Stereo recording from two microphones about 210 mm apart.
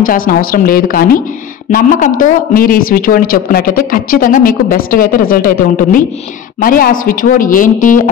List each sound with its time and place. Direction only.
0.0 s speech: 40° left (ahead or behind)